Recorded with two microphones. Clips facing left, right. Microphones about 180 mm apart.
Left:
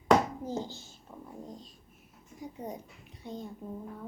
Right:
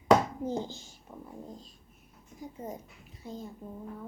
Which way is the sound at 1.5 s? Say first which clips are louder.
Even; centre (ahead or behind).